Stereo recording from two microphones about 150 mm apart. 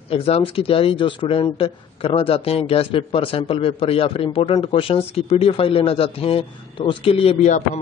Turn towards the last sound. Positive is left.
turn(degrees=50)  # may be behind; listen again after turning